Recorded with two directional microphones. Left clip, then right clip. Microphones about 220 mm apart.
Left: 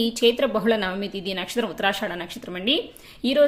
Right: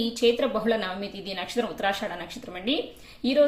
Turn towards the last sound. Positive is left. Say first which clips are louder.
# left 2 dB
turn(degrees=35)  # may be behind; listen again after turning